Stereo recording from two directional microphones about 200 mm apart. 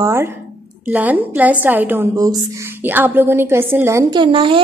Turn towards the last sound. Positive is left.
turn(degrees=-25)  # may be behind; listen again after turning